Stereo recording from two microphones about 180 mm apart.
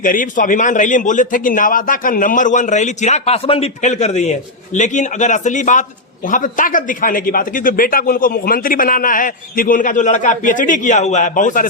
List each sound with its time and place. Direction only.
0.0 s a man's voice: 50° left (ahead or behind)